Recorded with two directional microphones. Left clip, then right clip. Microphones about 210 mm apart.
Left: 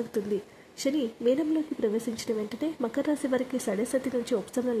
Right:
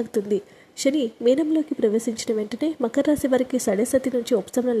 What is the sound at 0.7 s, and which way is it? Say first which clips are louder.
A woman's voice: right 7 dB; 20° right (ahead or behind).